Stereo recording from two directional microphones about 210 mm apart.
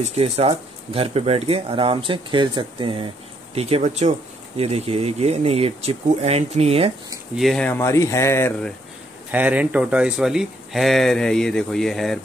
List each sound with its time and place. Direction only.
0.0 s speech: 30° right (ahead or behind)
7.3 s speech: centre (ahead or behind)
9.3 s speech: 5° right (ahead or behind)